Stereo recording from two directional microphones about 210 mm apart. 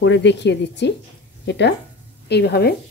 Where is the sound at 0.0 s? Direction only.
55° left (ahead or behind).